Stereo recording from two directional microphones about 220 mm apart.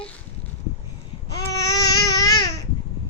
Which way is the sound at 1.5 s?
15° left (ahead or behind).